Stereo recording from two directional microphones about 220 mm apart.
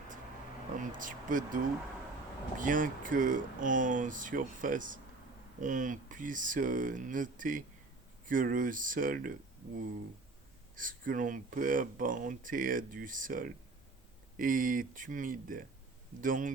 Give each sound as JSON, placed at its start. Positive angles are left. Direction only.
{"t": 0.8, "sound": "speech", "side_deg": -35}
{"t": 10.8, "sound": "speech", "side_deg": -40}